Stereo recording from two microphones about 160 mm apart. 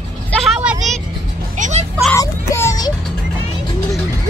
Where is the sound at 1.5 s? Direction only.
50° right (ahead or behind).